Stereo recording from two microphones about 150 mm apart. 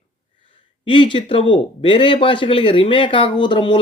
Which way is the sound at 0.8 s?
35° left (ahead or behind).